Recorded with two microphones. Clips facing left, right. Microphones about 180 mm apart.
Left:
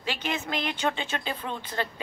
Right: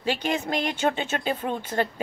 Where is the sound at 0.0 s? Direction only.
45° right (ahead or behind).